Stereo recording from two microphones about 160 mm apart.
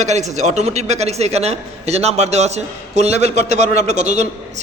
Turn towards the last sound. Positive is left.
turn(degrees=-45)  # may be behind; listen again after turning